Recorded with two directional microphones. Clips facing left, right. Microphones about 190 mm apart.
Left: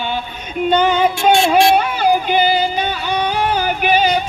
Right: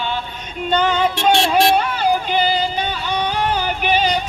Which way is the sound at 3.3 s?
10° left (ahead or behind).